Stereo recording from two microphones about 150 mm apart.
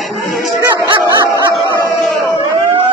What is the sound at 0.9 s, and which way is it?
Dog, 30° right (ahead or behind).